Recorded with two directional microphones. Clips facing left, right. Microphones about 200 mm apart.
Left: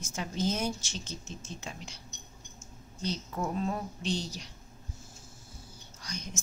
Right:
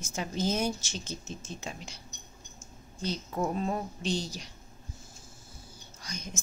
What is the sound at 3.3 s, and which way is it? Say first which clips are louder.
Speech: right 3 dB; 25° right (ahead or behind).